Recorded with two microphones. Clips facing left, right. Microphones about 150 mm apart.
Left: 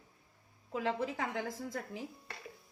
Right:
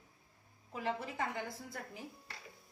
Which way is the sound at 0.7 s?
90° left.